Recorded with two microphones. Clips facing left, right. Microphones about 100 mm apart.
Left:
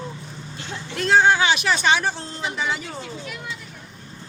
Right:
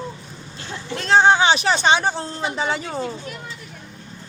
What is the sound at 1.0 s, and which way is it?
Speech, 30° right (ahead or behind).